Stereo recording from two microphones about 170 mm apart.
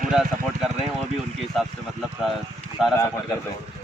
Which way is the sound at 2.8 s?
5° right (ahead or behind).